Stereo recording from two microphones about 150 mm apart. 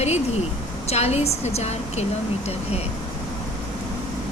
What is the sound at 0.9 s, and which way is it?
Speech, 45° left (ahead or behind).